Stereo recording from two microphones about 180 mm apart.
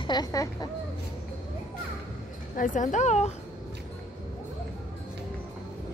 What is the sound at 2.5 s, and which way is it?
Speech, 45° left (ahead or behind).